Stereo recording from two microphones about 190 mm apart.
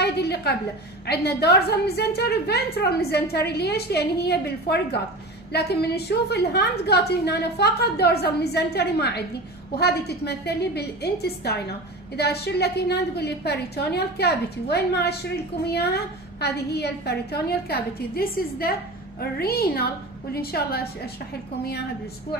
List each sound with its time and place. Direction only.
0.0 s a woman's voice: 60° left (ahead or behind)